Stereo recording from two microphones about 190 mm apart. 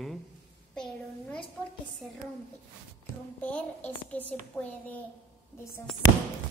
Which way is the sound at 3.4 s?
5° left (ahead or behind).